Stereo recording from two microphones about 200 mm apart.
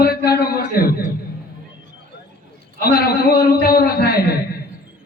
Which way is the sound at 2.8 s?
50° left (ahead or behind).